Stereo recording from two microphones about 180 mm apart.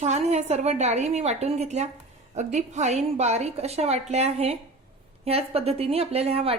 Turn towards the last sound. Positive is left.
turn(degrees=-35)  # may be behind; listen again after turning